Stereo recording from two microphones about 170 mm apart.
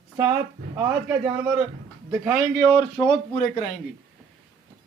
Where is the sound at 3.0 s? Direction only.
25° left (ahead or behind).